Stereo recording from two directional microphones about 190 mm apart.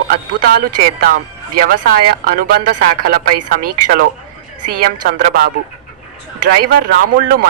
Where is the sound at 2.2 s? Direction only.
50° right (ahead or behind).